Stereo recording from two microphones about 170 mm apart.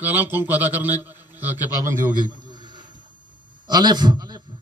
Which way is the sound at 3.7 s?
25° right (ahead or behind).